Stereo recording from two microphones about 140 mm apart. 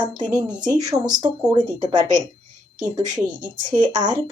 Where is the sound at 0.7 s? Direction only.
30° right (ahead or behind).